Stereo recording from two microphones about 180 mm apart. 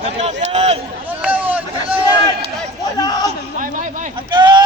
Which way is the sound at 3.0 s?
20° left (ahead or behind).